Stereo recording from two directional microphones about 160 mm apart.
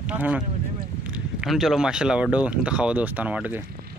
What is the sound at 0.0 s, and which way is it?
Speech, 10° right (ahead or behind).